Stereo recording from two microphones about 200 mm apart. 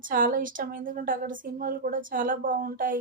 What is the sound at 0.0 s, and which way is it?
A woman's voice, 45° right (ahead or behind).